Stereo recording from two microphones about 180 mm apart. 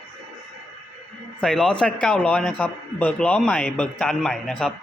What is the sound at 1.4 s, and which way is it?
A man's voice, 5° left (ahead or behind).